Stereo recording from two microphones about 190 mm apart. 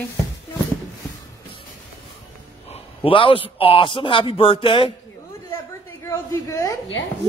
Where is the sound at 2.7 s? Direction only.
30° left (ahead or behind).